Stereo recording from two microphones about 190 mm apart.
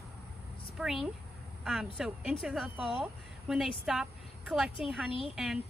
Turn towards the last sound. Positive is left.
turn(degrees=0)  # may be behind; listen again after turning